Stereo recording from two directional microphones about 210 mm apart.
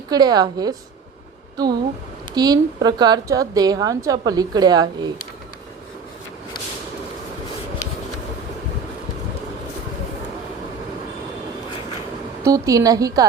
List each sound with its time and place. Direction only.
0.1 s a woman's voice: 20° right (ahead or behind)
12.4 s a woman's voice: 15° right (ahead or behind)